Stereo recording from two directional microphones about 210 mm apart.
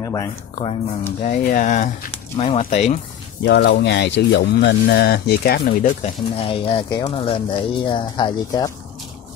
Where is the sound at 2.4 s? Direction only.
30° left (ahead or behind).